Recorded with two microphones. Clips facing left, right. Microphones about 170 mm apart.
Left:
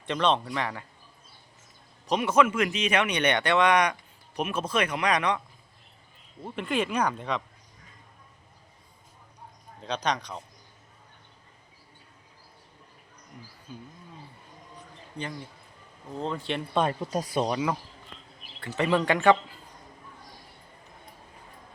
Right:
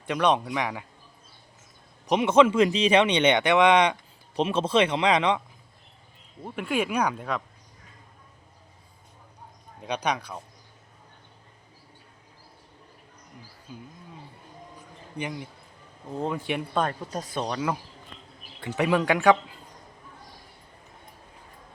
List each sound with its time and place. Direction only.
0.0 s speech: 10° right (ahead or behind)
2.0 s speech: 20° right (ahead or behind)
6.4 s speech: 5° right (ahead or behind)
9.8 s speech: 10° right (ahead or behind)
15.2 s speech: 15° right (ahead or behind)
16.7 s speech: 5° left (ahead or behind)
18.6 s speech: 10° right (ahead or behind)